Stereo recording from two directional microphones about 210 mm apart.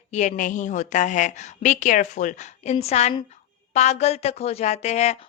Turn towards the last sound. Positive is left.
turn(degrees=30)  # may be behind; listen again after turning